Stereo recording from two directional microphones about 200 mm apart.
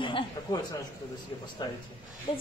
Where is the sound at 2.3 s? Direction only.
30° left (ahead or behind).